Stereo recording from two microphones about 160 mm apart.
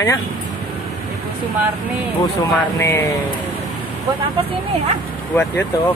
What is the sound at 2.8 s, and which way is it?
Speech, 15° left (ahead or behind).